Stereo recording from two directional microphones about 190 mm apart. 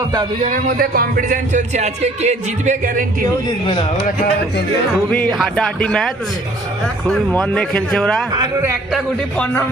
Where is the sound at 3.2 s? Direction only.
30° left (ahead or behind).